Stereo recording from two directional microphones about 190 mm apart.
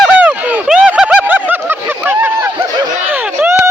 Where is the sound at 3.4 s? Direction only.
10° right (ahead or behind).